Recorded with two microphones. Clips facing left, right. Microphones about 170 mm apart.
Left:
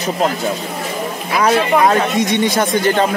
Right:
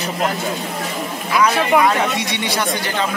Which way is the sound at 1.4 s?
45° left (ahead or behind).